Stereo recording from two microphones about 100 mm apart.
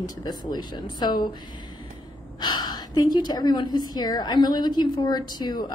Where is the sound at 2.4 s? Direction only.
45° left (ahead or behind).